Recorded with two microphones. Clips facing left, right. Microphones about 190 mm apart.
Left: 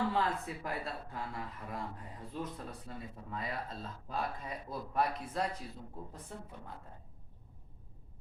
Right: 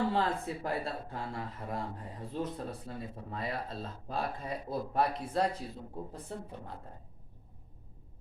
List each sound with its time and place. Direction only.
0.1 s speech: 30° right (ahead or behind)